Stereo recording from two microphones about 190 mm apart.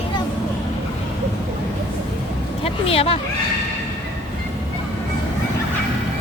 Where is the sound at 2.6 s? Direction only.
30° left (ahead or behind).